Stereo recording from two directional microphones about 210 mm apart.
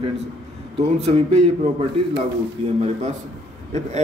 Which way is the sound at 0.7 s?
25° right (ahead or behind).